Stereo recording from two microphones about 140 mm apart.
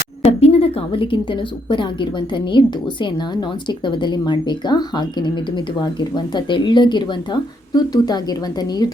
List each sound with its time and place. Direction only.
0.3 s a woman's voice: 45° left (ahead or behind); by 8.9 s 30° left (ahead or behind)